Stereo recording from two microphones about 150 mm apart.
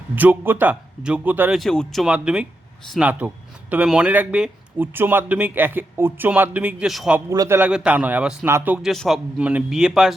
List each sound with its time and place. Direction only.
0.2 s speech: 10° right (ahead or behind)
1.5 s a man's voice: 5° left (ahead or behind)
7.3 s a man's voice: 20° right (ahead or behind); by 10.2 s 5° right (ahead or behind)